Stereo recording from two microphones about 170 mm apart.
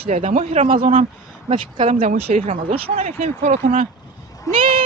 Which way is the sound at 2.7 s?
35° right (ahead or behind).